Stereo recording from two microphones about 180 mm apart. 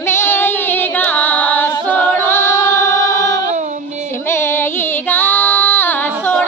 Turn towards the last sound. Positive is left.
turn(degrees=10)  # may be behind; listen again after turning